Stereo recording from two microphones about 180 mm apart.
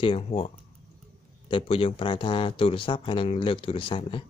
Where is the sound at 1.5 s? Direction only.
30° left (ahead or behind).